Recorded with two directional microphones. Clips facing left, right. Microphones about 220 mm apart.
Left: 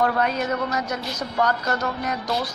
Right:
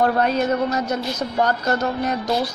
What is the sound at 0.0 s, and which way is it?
A woman's voice, 30° right (ahead or behind).